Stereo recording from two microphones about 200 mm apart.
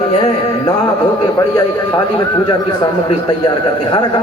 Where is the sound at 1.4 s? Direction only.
20° left (ahead or behind).